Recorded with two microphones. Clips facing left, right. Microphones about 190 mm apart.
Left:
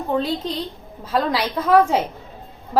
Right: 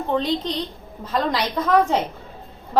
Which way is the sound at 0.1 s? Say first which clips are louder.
Even; 5° left (ahead or behind).